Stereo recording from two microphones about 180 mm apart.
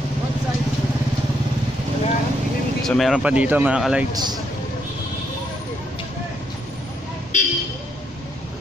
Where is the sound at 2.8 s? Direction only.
Centre (ahead or behind).